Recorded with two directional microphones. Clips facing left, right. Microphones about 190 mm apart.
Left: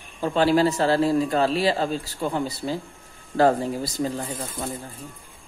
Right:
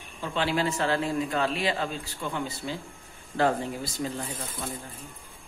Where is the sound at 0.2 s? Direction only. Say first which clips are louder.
Left 8 dB; 40° left (ahead or behind).